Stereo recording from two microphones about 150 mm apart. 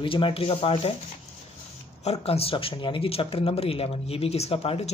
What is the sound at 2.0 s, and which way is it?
Speech, 40° left (ahead or behind).